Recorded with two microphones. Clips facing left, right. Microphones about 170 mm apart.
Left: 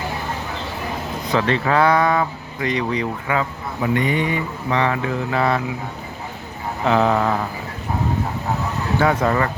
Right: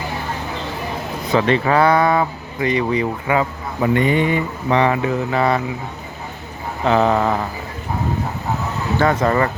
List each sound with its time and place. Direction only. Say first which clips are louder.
1.3 s speech: right 3 dB; 5° right (ahead or behind)
3.9 s speech: right 4 dB; 30° right (ahead or behind)
4.8 s speech: right 3 dB; 10° right (ahead or behind)
6.8 s speech: right 2 dB; centre (ahead or behind)
9.0 s speech: right 2 dB; 5° left (ahead or behind)